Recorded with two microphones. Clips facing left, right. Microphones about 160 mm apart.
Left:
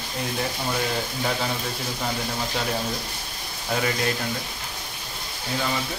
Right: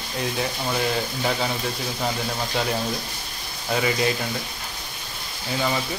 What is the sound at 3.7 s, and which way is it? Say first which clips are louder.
Speech: right 2 dB; 5° right (ahead or behind).